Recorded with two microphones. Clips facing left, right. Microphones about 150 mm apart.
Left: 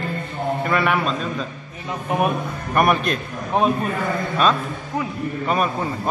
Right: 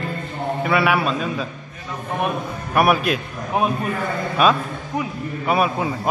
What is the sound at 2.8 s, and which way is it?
Speech, 5° right (ahead or behind).